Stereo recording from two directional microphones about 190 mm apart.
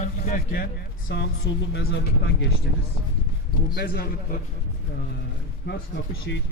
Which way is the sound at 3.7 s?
55° left (ahead or behind).